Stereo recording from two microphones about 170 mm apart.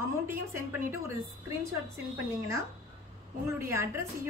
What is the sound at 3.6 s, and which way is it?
Speech, 15° right (ahead or behind).